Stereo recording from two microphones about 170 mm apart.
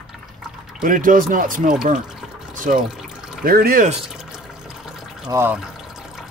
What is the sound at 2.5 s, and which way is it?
Water, 50° right (ahead or behind).